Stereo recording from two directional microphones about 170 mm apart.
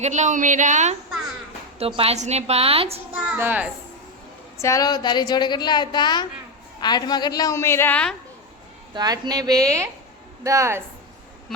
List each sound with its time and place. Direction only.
0.0 s a woman's voice: 45° right (ahead or behind)
3.2 s a child's voice: 10° right (ahead or behind)
4.5 s a woman's voice: 15° left (ahead or behind)
9.0 s a woman's voice: 25° right (ahead or behind)